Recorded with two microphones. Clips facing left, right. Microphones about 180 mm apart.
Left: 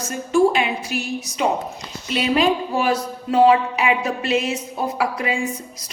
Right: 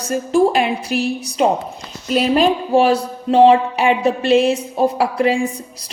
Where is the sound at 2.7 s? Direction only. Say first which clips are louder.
Right 7 dB; 30° right (ahead or behind).